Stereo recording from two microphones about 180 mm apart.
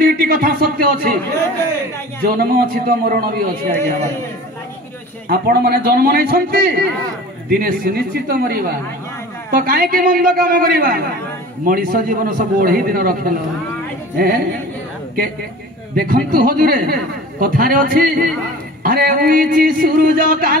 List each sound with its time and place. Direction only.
0.0 s speech: 55° right (ahead or behind)
2.2 s a man's voice: 55° right (ahead or behind)
5.3 s a man's voice: 60° right (ahead or behind)
16.0 s a man's voice: 55° right (ahead or behind)